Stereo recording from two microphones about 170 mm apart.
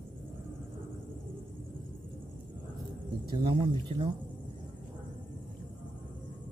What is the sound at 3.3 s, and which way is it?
Speech, 30° right (ahead or behind).